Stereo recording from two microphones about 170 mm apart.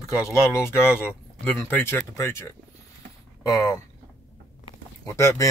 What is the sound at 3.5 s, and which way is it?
Speech, 15° left (ahead or behind).